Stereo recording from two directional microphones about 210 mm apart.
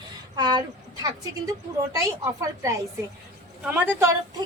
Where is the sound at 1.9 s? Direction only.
15° right (ahead or behind).